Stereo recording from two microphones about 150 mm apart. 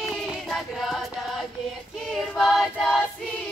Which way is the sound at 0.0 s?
5° left (ahead or behind).